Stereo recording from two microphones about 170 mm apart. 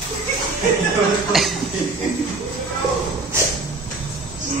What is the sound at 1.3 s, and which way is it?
Speech, centre (ahead or behind).